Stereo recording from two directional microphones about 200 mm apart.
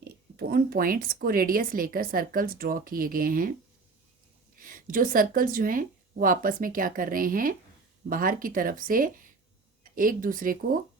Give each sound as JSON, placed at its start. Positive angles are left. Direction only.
{"t": 0.3, "sound": "speech", "side_deg": -50}
{"t": 4.5, "sound": "speech", "side_deg": -45}